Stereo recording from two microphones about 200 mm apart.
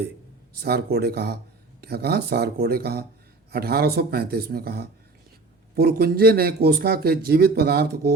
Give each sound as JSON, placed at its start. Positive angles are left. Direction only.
{"t": 0.6, "sound": "a man's voice", "side_deg": -50}